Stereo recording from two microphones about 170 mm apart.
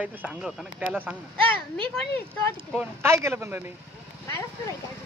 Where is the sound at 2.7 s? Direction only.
10° right (ahead or behind).